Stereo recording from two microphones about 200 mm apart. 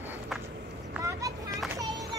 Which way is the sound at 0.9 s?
5° right (ahead or behind).